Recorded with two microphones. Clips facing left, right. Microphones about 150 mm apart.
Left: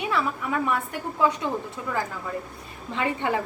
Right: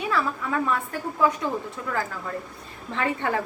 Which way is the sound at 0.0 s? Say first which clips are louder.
Even; 20° left (ahead or behind).